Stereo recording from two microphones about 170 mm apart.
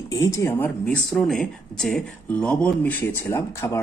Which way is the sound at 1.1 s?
5° left (ahead or behind).